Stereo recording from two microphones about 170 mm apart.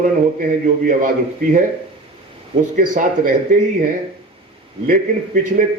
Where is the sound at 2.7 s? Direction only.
50° right (ahead or behind).